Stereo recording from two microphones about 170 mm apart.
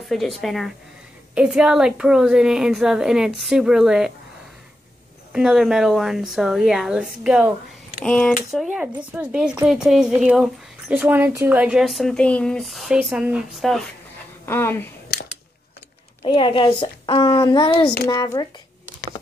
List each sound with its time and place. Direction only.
0.1 s speech: centre (ahead or behind)
5.3 s speech: 5° right (ahead or behind)
8.0 s speech: 5° left (ahead or behind)
8.7 s speech: 10° right (ahead or behind)
14.4 s a woman's voice: 15° left (ahead or behind)
16.3 s a child's voice: 30° left (ahead or behind)